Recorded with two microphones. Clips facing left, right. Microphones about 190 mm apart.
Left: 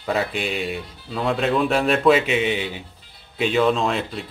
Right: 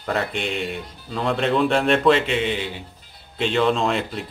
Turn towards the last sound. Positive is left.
turn(degrees=0)  # may be behind; listen again after turning